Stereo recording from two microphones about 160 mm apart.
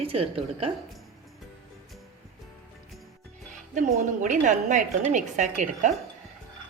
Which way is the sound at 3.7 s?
50° right (ahead or behind).